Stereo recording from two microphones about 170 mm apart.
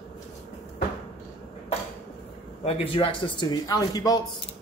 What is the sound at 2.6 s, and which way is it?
Speech, 35° left (ahead or behind).